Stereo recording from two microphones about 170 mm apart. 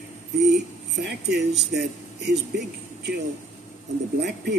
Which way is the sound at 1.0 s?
80° right.